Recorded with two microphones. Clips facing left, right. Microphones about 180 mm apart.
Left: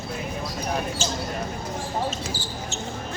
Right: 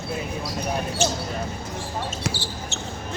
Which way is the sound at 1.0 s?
65° right (ahead or behind).